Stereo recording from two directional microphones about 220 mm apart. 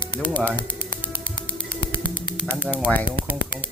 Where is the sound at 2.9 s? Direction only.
40° right (ahead or behind).